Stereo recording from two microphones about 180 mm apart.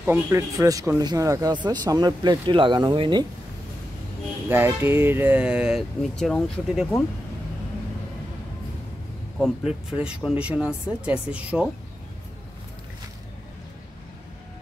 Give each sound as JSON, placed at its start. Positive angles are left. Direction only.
{"t": 0.0, "sound": "speech", "side_deg": -15}
{"t": 4.5, "sound": "speech", "side_deg": -10}
{"t": 9.4, "sound": "speech", "side_deg": -5}